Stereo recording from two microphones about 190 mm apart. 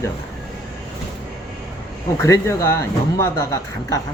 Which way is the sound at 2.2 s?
15° left (ahead or behind).